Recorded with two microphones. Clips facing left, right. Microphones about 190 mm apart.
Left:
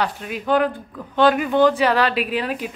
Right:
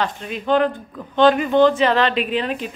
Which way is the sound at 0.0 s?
10° left (ahead or behind).